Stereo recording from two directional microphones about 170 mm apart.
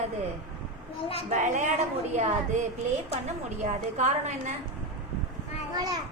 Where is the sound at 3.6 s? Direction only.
45° right (ahead or behind).